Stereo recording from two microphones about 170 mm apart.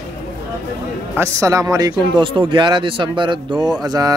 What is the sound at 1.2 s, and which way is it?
Speech, 20° right (ahead or behind).